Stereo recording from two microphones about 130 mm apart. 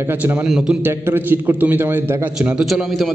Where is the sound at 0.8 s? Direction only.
15° right (ahead or behind).